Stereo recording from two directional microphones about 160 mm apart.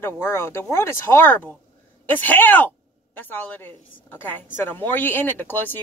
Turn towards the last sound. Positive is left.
turn(degrees=15)  # may be behind; listen again after turning